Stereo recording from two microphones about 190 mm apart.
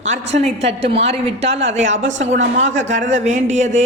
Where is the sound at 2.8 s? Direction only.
40° right (ahead or behind).